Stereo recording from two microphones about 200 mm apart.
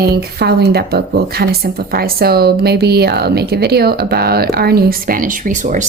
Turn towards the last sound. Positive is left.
turn(degrees=-40)  # may be behind; listen again after turning